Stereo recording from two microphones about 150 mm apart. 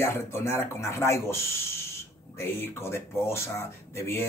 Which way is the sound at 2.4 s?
15° left (ahead or behind).